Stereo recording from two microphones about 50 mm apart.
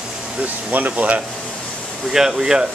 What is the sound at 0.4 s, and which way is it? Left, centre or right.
Speech, right.